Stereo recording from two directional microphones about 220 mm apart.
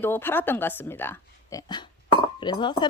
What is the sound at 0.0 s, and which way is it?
A woman's voice, 10° left (ahead or behind).